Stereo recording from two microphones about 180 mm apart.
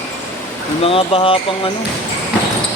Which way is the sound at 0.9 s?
30° left (ahead or behind).